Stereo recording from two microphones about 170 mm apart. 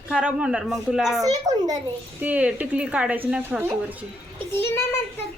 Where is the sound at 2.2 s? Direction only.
10° right (ahead or behind).